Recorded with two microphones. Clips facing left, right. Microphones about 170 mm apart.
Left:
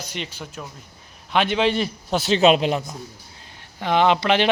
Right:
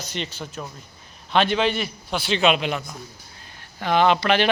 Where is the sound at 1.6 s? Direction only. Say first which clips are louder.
Left 2 dB; 30° left (ahead or behind).